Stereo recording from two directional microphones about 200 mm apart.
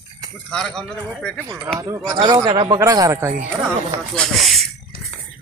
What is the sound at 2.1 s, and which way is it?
Speech, 20° right (ahead or behind).